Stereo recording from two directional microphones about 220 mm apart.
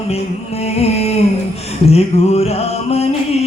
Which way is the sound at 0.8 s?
30° left (ahead or behind).